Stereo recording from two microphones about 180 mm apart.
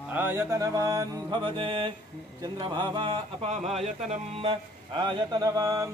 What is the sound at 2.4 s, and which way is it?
Speech, 25° right (ahead or behind).